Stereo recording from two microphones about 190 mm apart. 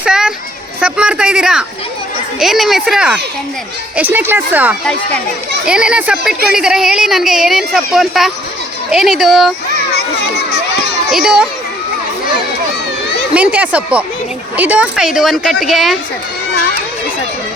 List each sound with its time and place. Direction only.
0.0 s a sound: 5° right (ahead or behind)
2.4 s speech: centre (ahead or behind)
9.9 s children playing: 60° left (ahead or behind)
11.1 s speech: 5° right (ahead or behind)
13.3 s speech: 5° right (ahead or behind)